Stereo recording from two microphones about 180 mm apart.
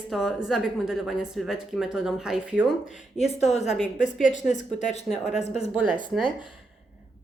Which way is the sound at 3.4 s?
35° left (ahead or behind).